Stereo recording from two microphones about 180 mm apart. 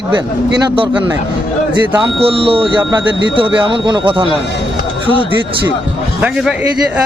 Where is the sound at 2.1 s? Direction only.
30° right (ahead or behind).